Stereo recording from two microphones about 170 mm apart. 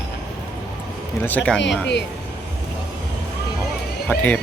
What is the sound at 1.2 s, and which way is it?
Speech, 10° left (ahead or behind).